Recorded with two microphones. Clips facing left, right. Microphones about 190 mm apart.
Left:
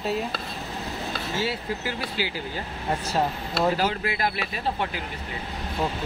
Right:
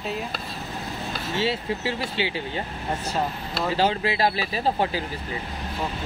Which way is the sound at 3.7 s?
25° right (ahead or behind).